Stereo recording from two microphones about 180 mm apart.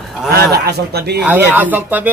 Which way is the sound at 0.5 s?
65° right (ahead or behind).